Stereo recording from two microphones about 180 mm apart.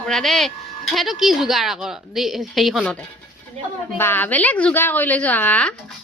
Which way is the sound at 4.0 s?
10° left (ahead or behind).